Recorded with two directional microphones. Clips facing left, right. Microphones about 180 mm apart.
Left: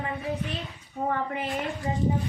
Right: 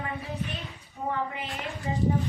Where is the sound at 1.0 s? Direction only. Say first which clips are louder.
Left 4 dB; 40° left (ahead or behind).